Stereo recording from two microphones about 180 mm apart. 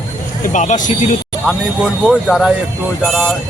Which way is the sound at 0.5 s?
40° left (ahead or behind).